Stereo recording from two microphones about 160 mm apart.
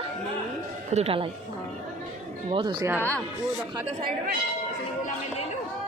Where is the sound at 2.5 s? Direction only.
25° right (ahead or behind).